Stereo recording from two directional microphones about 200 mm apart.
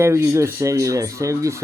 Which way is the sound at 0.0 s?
15° right (ahead or behind).